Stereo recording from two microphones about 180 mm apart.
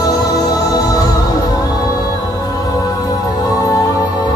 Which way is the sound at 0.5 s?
20° left (ahead or behind).